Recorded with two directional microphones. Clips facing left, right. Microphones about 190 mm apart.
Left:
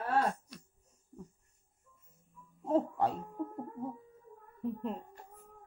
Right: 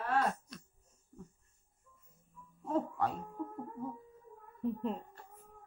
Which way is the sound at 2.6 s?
30° left (ahead or behind).